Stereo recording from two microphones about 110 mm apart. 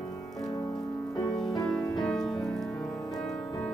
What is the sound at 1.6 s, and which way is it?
Music, 5° left (ahead or behind).